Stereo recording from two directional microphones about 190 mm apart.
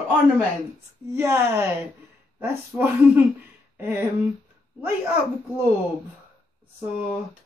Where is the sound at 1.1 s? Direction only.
15° right (ahead or behind).